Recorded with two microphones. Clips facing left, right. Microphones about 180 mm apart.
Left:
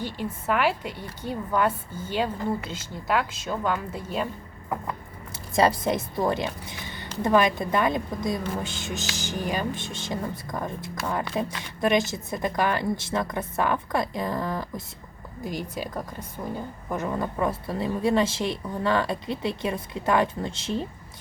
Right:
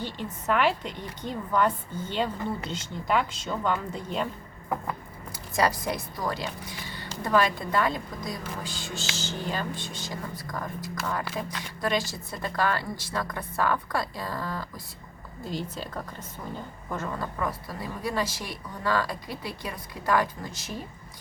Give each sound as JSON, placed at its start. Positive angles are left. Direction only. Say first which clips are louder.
{"t": 0.0, "sound": "a woman's voice", "louder": "left 2 dB", "side_deg": 10}
{"t": 5.5, "sound": "a woman's voice", "louder": "left 4 dB", "side_deg": 25}